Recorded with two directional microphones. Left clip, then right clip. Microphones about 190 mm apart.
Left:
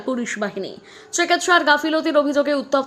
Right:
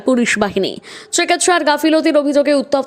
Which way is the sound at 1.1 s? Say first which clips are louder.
Right 3 dB; 40° right (ahead or behind).